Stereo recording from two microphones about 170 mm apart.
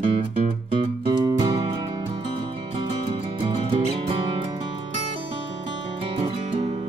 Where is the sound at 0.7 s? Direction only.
25° right (ahead or behind).